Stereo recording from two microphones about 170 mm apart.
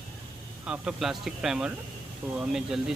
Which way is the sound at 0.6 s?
5° right (ahead or behind).